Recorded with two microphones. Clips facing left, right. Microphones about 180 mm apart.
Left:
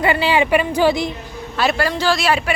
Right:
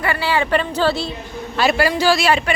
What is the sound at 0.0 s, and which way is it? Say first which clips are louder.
Speech: left 3 dB; 20° left (ahead or behind).